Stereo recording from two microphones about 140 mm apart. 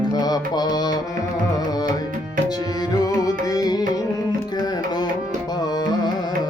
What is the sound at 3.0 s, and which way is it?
Music, 25° left (ahead or behind).